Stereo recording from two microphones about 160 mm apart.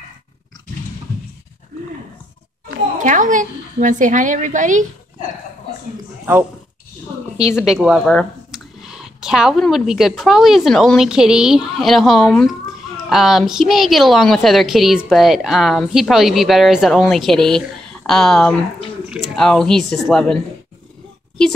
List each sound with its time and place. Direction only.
3.0 s a woman's voice: 50° right (ahead or behind)
7.3 s speech: 5° right (ahead or behind)